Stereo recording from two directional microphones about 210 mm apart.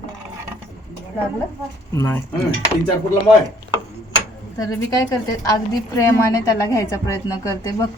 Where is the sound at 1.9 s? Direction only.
10° left (ahead or behind).